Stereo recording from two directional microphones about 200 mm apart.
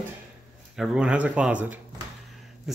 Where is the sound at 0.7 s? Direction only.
5° right (ahead or behind).